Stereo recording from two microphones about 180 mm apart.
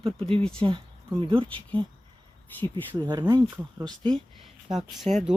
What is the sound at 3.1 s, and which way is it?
Speech, 20° right (ahead or behind).